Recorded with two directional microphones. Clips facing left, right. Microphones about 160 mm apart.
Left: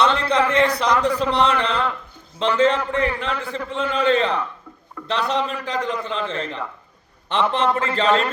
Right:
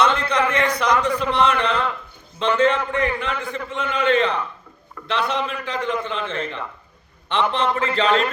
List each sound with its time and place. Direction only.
0.0 s a man's voice: 30° left (ahead or behind)